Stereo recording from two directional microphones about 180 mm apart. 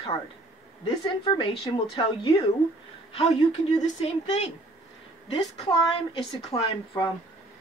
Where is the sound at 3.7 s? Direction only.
35° left (ahead or behind).